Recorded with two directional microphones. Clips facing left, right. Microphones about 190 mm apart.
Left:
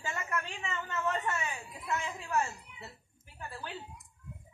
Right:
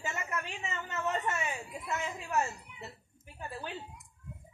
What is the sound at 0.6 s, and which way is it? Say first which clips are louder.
Speech: even; 20° right (ahead or behind).